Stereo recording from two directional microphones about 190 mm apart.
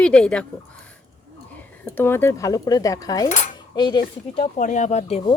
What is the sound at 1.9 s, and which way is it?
Speech, 10° left (ahead or behind).